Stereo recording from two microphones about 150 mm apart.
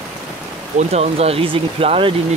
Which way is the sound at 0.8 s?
45° right (ahead or behind).